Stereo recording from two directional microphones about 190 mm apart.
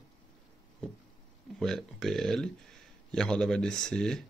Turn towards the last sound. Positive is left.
turn(degrees=5)  # may be behind; listen again after turning